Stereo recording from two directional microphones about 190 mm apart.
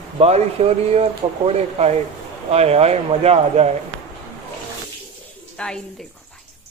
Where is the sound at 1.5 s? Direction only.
35° right (ahead or behind).